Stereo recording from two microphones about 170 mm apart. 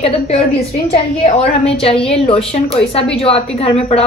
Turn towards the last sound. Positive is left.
turn(degrees=35)  # may be behind; listen again after turning